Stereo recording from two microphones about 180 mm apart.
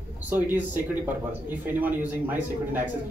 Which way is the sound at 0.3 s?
10° right (ahead or behind).